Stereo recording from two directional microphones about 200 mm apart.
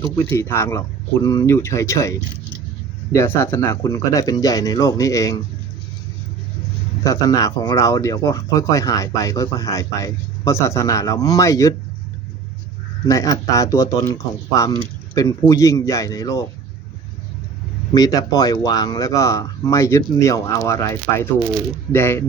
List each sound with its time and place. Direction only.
0.0 s speech: 15° left (ahead or behind)
7.0 s speech: 15° left (ahead or behind)
13.1 s speech: 15° left (ahead or behind)
17.9 s speech: 20° left (ahead or behind)